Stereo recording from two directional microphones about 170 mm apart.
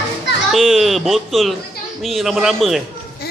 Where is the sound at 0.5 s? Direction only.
Centre (ahead or behind).